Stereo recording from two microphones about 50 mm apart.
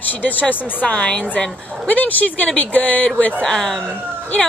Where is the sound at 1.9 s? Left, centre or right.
Left.